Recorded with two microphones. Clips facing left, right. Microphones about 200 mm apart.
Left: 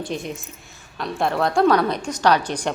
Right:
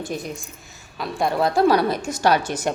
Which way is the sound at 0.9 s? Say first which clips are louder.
Even; centre (ahead or behind).